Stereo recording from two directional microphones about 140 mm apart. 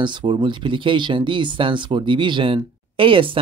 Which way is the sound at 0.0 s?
35° right (ahead or behind).